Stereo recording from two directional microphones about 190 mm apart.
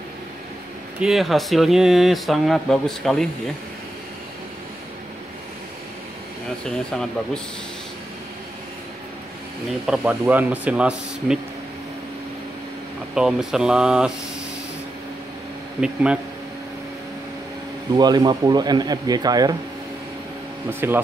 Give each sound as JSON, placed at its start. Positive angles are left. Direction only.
{"t": 0.9, "sound": "speech", "side_deg": 0}
{"t": 6.6, "sound": "speech", "side_deg": 5}
{"t": 9.8, "sound": "speech", "side_deg": -5}
{"t": 13.1, "sound": "speech", "side_deg": -5}
{"t": 15.8, "sound": "speech", "side_deg": -5}
{"t": 17.9, "sound": "speech", "side_deg": -20}
{"t": 20.8, "sound": "speech", "side_deg": -10}